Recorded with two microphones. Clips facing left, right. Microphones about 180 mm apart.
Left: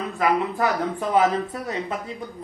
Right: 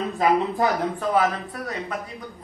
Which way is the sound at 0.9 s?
20° left (ahead or behind).